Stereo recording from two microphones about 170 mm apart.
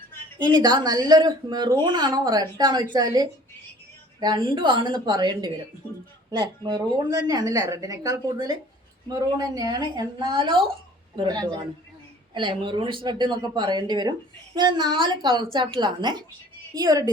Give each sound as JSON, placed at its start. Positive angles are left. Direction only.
{"t": 0.3, "sound": "speech", "side_deg": -25}